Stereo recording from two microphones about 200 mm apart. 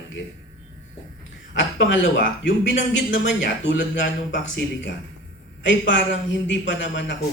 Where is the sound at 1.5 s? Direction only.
65° left (ahead or behind).